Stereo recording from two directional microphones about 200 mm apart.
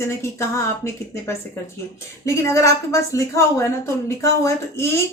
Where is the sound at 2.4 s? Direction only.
15° left (ahead or behind).